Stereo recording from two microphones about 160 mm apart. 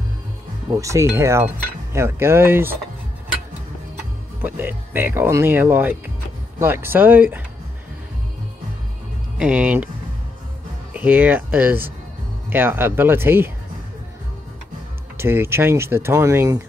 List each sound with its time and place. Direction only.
0.7 s speech: 20° right (ahead or behind)
4.4 s speech: 10° right (ahead or behind)
9.4 s speech: 10° right (ahead or behind)
10.9 s speech: 10° right (ahead or behind)
15.1 s speech: 15° right (ahead or behind)